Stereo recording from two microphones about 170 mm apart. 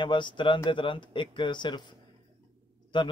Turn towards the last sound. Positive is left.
turn(degrees=25)  # may be behind; listen again after turning